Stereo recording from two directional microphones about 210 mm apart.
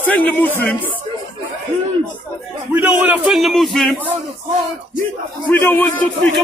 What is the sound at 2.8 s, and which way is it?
A man's voice, 10° right (ahead or behind).